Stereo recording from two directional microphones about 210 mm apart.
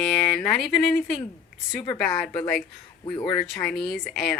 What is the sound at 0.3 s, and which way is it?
Speech, 5° left (ahead or behind).